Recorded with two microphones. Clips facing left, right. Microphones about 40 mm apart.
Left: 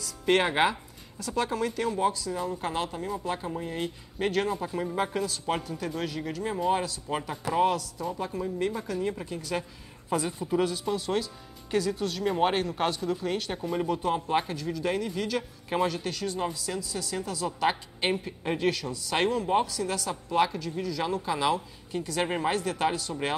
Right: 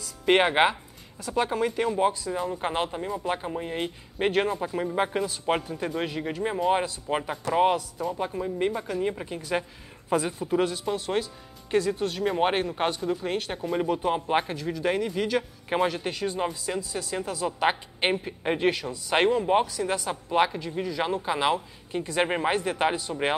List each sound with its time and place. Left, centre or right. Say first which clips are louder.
0.3 s speech: right 3 dB; right